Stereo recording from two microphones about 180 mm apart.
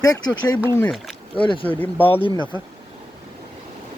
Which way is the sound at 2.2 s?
25° left (ahead or behind).